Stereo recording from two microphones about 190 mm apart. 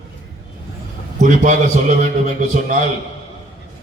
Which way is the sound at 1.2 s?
40° right (ahead or behind).